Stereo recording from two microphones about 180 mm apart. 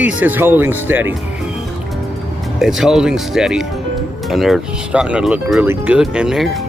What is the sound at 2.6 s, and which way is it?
Speech, centre (ahead or behind).